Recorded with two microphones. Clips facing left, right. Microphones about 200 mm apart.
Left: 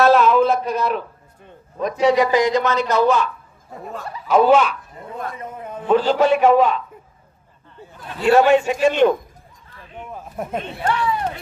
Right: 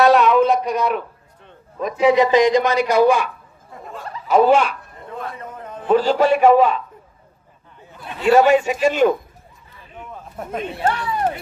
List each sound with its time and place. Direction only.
0.1 s a sound: centre (ahead or behind)
0.6 s a man's voice: 15° right (ahead or behind)
2.1 s a man's voice: 20° right (ahead or behind)
4.3 s speech: centre (ahead or behind)
5.4 s a sound: 10° left (ahead or behind)
5.9 s a man's voice: 5° right (ahead or behind)
7.9 s a man's voice: 10° right (ahead or behind)
10.0 s a sound: 10° left (ahead or behind)
10.9 s speech: 45° right (ahead or behind)